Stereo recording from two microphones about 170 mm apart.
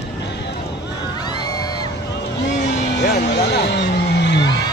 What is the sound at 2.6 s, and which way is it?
Music, 85° left.